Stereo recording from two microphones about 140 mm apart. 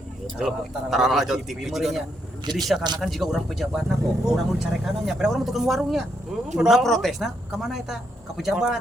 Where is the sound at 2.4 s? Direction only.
30° right (ahead or behind).